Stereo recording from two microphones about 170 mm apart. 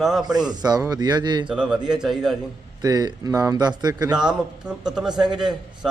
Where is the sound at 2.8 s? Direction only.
20° right (ahead or behind).